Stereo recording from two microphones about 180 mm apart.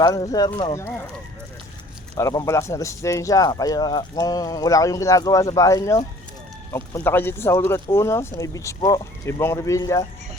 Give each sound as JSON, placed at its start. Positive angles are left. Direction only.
{"t": 0.0, "sound": "speech", "side_deg": 20}
{"t": 2.1, "sound": "speech", "side_deg": 20}